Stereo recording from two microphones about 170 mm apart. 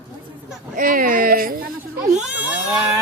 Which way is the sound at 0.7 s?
55° right (ahead or behind).